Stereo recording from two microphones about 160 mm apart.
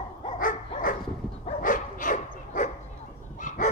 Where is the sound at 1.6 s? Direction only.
55° left (ahead or behind).